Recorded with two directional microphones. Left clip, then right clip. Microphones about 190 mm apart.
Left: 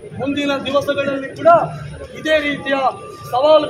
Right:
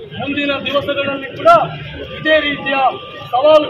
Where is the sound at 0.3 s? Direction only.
15° left (ahead or behind).